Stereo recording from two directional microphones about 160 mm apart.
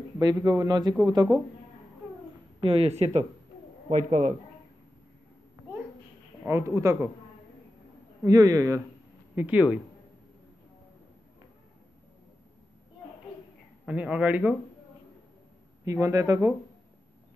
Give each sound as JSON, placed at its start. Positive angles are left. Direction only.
{"t": 0.2, "sound": "a man's voice", "side_deg": -25}
{"t": 2.6, "sound": "speech", "side_deg": -35}
{"t": 6.4, "sound": "speech", "side_deg": -15}
{"t": 8.2, "sound": "a man's voice", "side_deg": -20}
{"t": 9.3, "sound": "speech", "side_deg": -10}
{"t": 13.8, "sound": "speech", "side_deg": -5}
{"t": 15.8, "sound": "a man's voice", "side_deg": -20}